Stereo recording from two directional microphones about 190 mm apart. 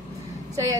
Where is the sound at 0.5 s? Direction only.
15° right (ahead or behind).